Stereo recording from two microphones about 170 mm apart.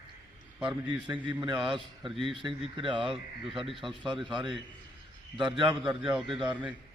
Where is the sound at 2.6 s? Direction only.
30° right (ahead or behind).